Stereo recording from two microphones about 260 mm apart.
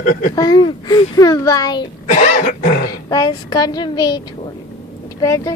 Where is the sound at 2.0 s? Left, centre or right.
Left.